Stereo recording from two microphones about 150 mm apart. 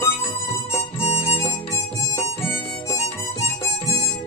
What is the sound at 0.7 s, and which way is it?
Music, 45° left (ahead or behind).